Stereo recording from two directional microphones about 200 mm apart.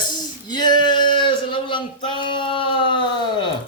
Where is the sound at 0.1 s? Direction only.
20° left (ahead or behind).